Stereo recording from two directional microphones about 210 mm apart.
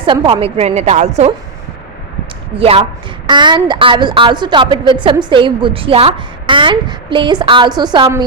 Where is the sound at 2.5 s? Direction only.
25° right (ahead or behind).